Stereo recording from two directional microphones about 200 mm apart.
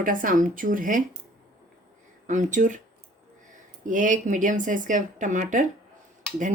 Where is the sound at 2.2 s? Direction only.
40° right (ahead or behind).